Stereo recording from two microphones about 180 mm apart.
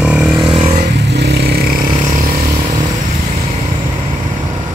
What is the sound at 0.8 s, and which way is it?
Vehicle, 70° right (ahead or behind).